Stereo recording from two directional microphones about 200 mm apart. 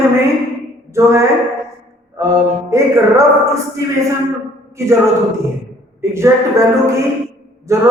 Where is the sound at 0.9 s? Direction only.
15° right (ahead or behind).